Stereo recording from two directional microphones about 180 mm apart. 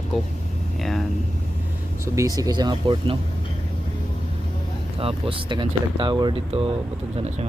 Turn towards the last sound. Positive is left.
turn(degrees=-30)  # may be behind; listen again after turning